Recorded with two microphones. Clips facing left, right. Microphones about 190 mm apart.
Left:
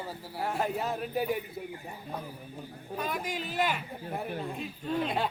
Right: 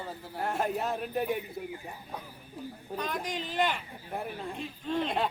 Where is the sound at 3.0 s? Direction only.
5° left (ahead or behind).